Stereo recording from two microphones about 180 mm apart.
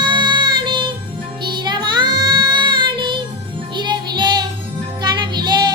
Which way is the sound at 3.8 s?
25° right (ahead or behind).